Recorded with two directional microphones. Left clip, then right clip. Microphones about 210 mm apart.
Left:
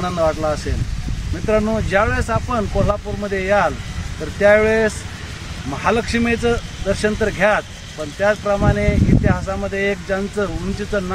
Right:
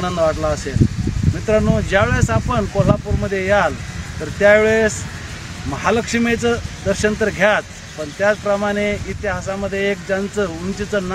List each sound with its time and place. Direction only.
0.0 s speech: 20° right (ahead or behind)